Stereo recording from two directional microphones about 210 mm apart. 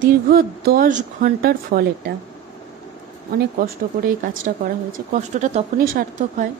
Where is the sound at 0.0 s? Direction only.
45° right (ahead or behind).